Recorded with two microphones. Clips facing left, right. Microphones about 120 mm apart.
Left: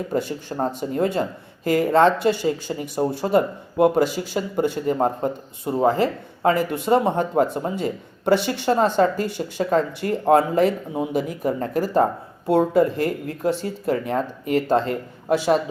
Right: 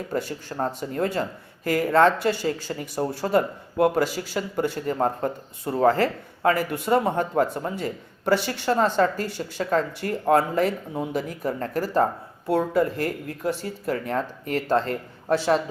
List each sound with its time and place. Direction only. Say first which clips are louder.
0.1 s speech: left 4 dB; 20° left (ahead or behind)